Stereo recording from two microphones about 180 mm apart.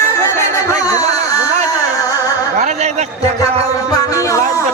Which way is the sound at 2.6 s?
40° right (ahead or behind).